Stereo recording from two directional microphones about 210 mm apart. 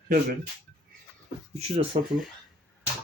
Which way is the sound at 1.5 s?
30° right (ahead or behind).